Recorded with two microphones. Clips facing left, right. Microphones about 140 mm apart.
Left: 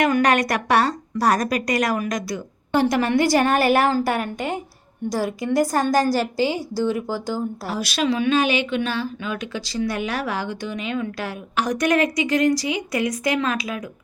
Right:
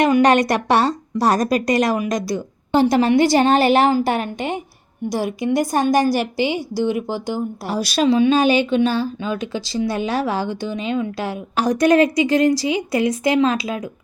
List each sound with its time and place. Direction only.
0.0 s a woman's voice: 25° right (ahead or behind)
7.8 s a woman's voice: 35° right (ahead or behind)